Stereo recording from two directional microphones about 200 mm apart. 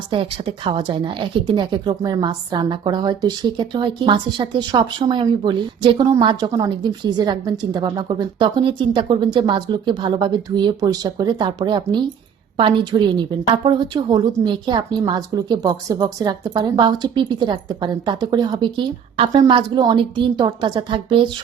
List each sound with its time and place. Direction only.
0.1 s speech: 25° right (ahead or behind)